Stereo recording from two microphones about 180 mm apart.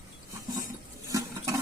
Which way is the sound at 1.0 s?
15° right (ahead or behind).